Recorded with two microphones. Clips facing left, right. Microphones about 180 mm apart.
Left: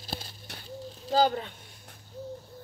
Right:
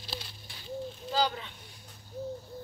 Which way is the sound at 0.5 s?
75° left (ahead or behind).